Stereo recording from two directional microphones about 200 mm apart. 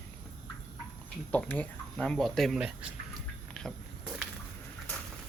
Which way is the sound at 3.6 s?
5° left (ahead or behind).